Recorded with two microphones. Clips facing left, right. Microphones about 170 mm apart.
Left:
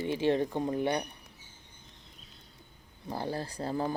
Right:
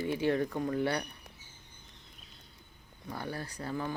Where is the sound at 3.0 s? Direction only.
30° left (ahead or behind).